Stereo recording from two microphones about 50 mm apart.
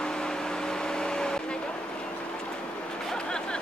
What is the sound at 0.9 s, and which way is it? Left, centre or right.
Vehicle, centre.